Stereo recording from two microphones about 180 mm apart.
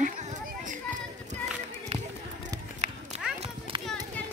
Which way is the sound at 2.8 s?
40° right (ahead or behind).